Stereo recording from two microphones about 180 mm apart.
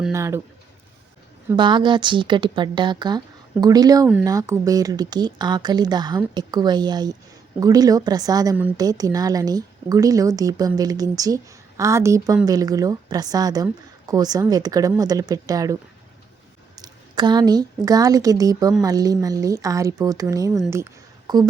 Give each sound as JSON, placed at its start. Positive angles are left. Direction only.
{"t": 0.1, "sound": "a woman's voice", "side_deg": -15}
{"t": 1.5, "sound": "a woman's voice", "side_deg": -25}